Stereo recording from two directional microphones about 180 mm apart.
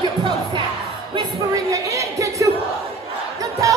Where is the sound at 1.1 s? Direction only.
20° right (ahead or behind).